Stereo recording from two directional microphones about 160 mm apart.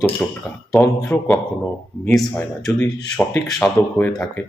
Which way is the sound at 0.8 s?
15° left (ahead or behind).